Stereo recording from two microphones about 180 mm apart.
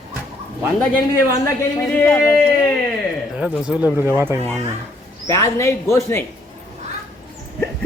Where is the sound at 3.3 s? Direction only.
5° right (ahead or behind).